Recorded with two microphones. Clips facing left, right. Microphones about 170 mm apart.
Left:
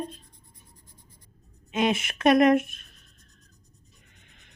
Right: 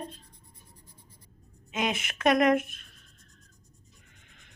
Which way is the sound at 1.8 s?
25° left (ahead or behind).